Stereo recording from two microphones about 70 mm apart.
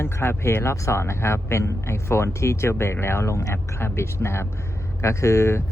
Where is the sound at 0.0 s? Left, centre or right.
Left.